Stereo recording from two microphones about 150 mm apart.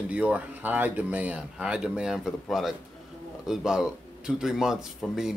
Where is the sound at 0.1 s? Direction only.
10° right (ahead or behind).